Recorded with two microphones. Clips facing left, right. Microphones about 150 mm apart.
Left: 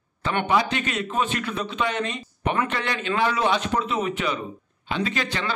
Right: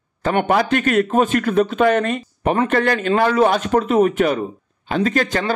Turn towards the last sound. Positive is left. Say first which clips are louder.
# right 8 dB
turn(degrees=-45)  # may be behind; listen again after turning